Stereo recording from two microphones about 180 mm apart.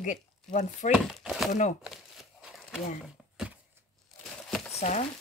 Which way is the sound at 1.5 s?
40° left (ahead or behind).